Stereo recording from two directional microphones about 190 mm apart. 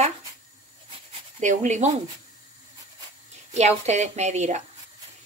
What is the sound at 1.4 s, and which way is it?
Speech, 40° right (ahead or behind).